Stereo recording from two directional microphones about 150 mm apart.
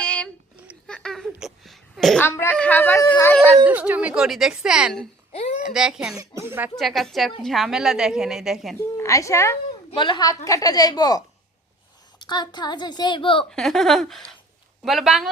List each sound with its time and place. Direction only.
0.0 s a sound: 5° left (ahead or behind)
2.2 s speech: 15° left (ahead or behind)
3.7 s a woman's voice: 10° right (ahead or behind)
5.3 s a sound: 45° left (ahead or behind)
5.6 s a woman's voice: 5° right (ahead or behind)
6.1 s speech: 15° right (ahead or behind)
6.7 s a woman's voice: centre (ahead or behind)
9.0 s a woman's voice: 20° left (ahead or behind)
9.9 s a woman's voice: 30° left (ahead or behind)
12.2 s a woman's voice: 30° left (ahead or behind)
13.5 s a woman's voice: centre (ahead or behind)